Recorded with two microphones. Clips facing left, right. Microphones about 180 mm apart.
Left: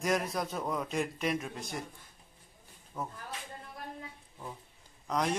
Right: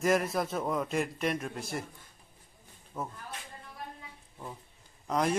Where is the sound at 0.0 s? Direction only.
Centre (ahead or behind).